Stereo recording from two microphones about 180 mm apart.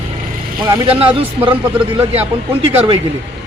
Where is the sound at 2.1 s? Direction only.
35° right (ahead or behind).